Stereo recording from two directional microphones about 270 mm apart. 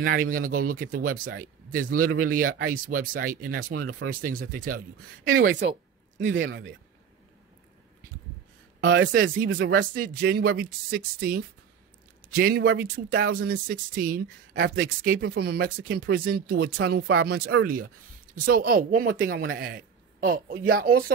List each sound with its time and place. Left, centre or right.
0.0 s speech: right
5.3 s speech: right
8.8 s speech: right
9.2 s speech: right